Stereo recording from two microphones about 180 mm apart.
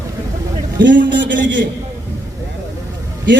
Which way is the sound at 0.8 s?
80° right.